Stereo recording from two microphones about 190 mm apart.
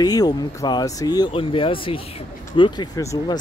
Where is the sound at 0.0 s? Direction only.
20° left (ahead or behind).